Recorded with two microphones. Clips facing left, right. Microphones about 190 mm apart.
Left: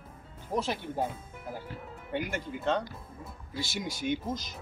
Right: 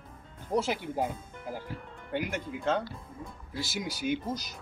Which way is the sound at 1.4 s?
5° left (ahead or behind).